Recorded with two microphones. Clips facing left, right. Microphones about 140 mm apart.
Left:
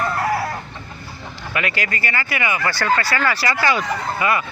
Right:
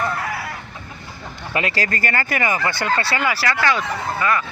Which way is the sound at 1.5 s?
30° right (ahead or behind).